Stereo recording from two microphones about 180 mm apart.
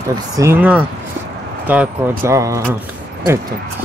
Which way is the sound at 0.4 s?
10° right (ahead or behind).